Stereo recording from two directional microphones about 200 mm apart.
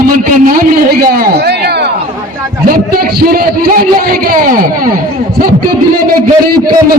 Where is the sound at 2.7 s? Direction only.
50° right (ahead or behind).